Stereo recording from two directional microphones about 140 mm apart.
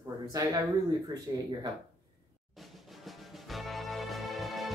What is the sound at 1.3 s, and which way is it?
Speech, 30° right (ahead or behind).